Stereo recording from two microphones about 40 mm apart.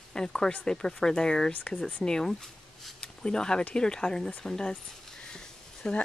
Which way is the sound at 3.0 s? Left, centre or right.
Centre.